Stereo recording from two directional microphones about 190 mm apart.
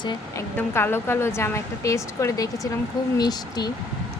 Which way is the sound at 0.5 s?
10° left (ahead or behind).